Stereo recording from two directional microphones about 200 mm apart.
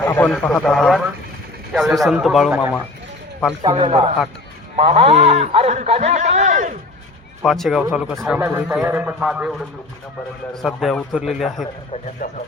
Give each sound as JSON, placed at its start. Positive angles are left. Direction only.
{"t": 0.0, "sound": "a man's voice", "side_deg": 10}
{"t": 3.6, "sound": "a man's voice", "side_deg": -25}
{"t": 7.4, "sound": "a man's voice", "side_deg": 0}
{"t": 12.2, "sound": "speech", "side_deg": 40}